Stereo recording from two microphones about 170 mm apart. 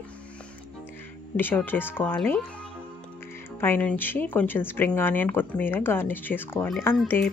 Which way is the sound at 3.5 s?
10° left (ahead or behind).